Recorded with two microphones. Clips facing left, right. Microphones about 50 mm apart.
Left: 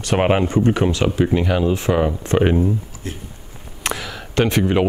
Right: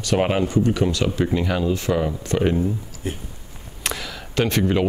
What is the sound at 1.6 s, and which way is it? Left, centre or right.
Speech, left.